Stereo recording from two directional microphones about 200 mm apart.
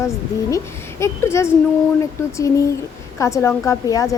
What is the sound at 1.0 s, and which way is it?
Speech, 15° left (ahead or behind).